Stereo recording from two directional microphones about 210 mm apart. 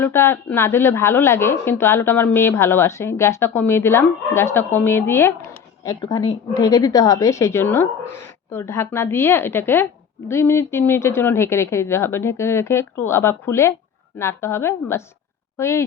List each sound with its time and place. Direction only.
0.0 s a woman's voice: 10° left (ahead or behind)